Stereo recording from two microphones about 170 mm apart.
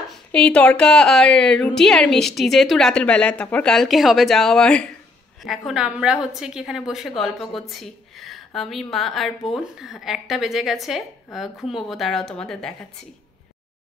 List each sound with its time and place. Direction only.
0.3 s a woman's voice: 5° left (ahead or behind)